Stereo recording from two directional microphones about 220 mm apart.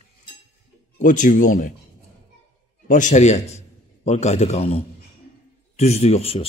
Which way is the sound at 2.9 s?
35° left (ahead or behind).